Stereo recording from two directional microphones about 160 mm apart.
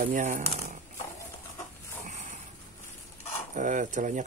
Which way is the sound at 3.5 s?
50° right (ahead or behind).